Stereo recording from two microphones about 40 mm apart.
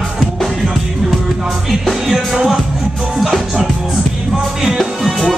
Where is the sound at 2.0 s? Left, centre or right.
Centre.